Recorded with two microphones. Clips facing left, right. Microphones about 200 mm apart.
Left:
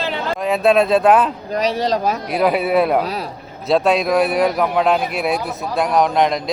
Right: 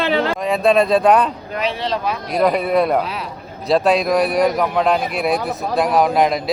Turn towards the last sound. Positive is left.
turn(degrees=-5)  # may be behind; listen again after turning